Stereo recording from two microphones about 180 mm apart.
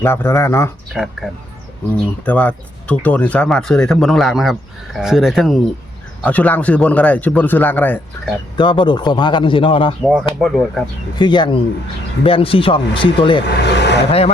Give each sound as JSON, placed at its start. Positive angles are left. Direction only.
{"t": 0.0, "sound": "speech", "side_deg": 15}
{"t": 0.9, "sound": "speech", "side_deg": 0}
{"t": 8.5, "sound": "a man's voice", "side_deg": 25}
{"t": 10.0, "sound": "speech", "side_deg": 0}
{"t": 11.2, "sound": "a man's voice", "side_deg": 25}
{"t": 13.4, "sound": "speech", "side_deg": 70}